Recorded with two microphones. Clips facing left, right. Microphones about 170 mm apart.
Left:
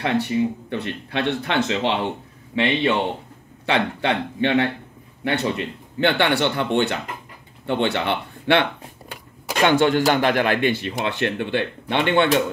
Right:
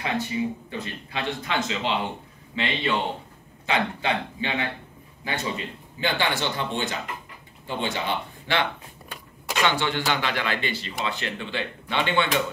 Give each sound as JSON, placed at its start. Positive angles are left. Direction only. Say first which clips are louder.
{"t": 0.0, "sound": "speech", "louder": "left 6 dB", "side_deg": 65}
{"t": 9.6, "sound": "speech", "louder": "left 8 dB", "side_deg": 50}